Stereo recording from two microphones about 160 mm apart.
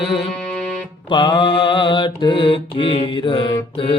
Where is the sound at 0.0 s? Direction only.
Centre (ahead or behind).